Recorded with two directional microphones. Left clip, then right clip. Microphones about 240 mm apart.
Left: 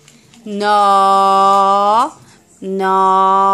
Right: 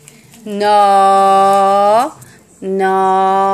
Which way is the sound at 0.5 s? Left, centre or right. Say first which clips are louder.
Right 2 dB; left.